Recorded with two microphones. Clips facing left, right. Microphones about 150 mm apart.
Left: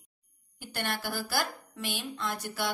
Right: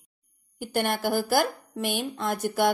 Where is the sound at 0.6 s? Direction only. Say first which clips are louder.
Right 9 dB; 50° right (ahead or behind).